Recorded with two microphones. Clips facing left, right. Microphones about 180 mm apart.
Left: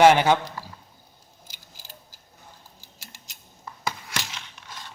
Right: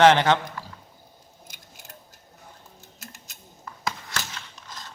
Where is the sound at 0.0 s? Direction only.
10° left (ahead or behind).